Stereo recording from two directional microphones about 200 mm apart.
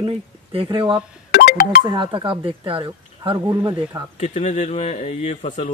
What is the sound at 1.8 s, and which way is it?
Speech, 25° right (ahead or behind).